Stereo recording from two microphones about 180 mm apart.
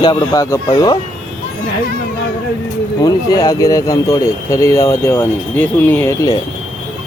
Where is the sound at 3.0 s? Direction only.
20° left (ahead or behind).